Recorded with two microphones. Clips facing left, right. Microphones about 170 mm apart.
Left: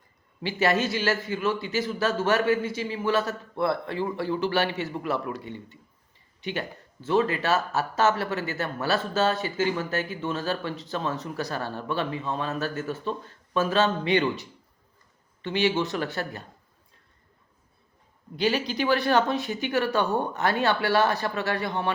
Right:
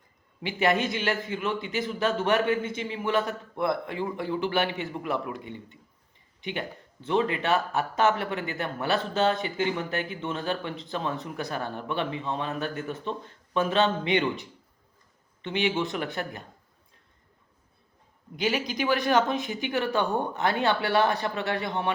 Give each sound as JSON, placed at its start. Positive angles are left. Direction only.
{"t": 0.4, "sound": "a man's voice", "side_deg": -15}
{"t": 15.4, "sound": "a man's voice", "side_deg": -20}
{"t": 18.3, "sound": "a man's voice", "side_deg": -15}